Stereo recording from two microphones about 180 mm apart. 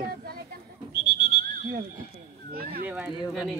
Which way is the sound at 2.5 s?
55° right (ahead or behind).